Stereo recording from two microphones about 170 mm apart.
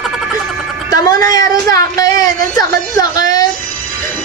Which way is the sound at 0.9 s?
20° left (ahead or behind).